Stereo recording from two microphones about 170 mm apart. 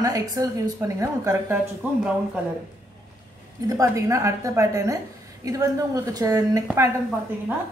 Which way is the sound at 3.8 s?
20° right (ahead or behind).